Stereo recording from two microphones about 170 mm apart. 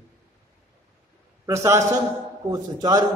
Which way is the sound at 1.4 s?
15° right (ahead or behind).